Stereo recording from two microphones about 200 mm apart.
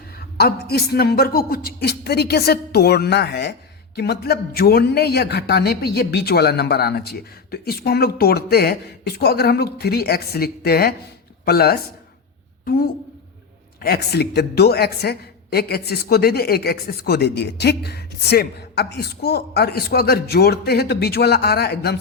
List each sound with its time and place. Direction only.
0.3 s a woman's voice: 50° left (ahead or behind)